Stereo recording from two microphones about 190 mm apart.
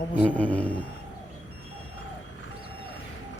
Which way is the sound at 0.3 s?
10° left (ahead or behind).